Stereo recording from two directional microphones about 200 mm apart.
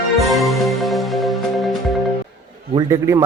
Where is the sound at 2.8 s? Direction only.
15° right (ahead or behind).